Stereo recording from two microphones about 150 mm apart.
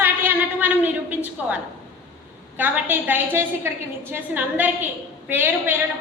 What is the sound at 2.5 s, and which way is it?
A woman's voice, 10° right (ahead or behind).